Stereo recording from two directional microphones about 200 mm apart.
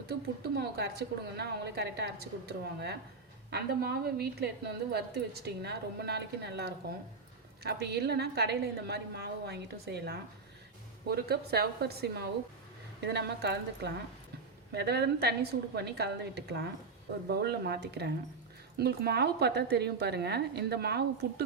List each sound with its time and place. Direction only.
0.1 s a woman's voice: 55° right (ahead or behind)